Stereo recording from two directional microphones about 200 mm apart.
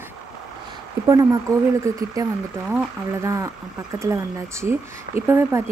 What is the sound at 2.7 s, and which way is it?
Speech, 15° right (ahead or behind).